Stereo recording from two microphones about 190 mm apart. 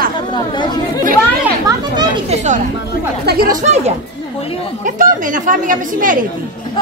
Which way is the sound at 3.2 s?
55° right (ahead or behind).